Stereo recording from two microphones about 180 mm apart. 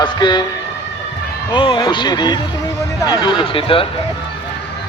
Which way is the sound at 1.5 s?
25° left (ahead or behind).